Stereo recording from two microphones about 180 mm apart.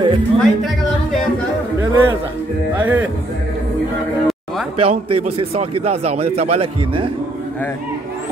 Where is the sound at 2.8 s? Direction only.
10° right (ahead or behind).